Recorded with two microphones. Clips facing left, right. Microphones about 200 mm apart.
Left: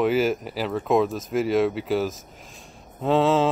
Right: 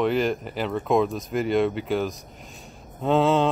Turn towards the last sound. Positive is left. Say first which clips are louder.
# even
turn(degrees=0)  # may be behind; listen again after turning